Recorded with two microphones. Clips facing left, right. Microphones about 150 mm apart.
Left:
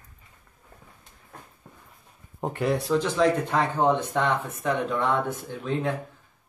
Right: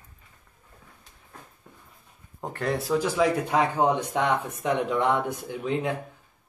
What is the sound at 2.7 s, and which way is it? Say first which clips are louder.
Speech: left 1 dB; centre (ahead or behind).